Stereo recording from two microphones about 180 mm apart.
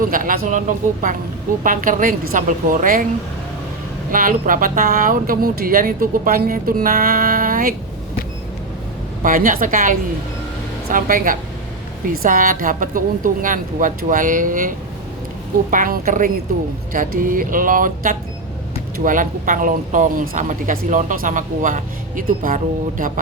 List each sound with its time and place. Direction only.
0.0 s speech: 50° right (ahead or behind)
1.6 s speech: 45° right (ahead or behind)
4.1 s speech: 50° right (ahead or behind)
9.2 s speech: 50° right (ahead or behind)